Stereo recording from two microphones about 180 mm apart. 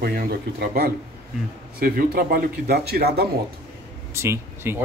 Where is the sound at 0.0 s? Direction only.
55° right (ahead or behind).